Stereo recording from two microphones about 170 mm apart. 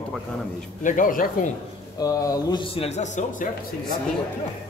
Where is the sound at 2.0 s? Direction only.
20° left (ahead or behind); by 3.4 s 45° left (ahead or behind).